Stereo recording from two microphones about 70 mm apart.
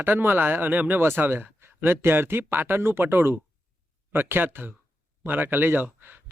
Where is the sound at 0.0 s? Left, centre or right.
Right.